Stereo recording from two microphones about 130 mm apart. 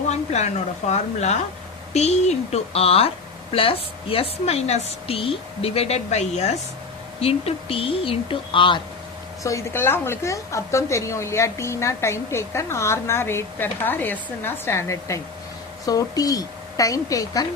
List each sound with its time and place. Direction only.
0.1 s a woman's voice: 60° left (ahead or behind); by 8.8 s 40° left (ahead or behind)
9.4 s a woman's voice: 25° left (ahead or behind)